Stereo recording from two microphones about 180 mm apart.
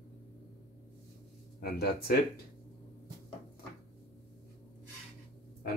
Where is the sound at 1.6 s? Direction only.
60° left (ahead or behind).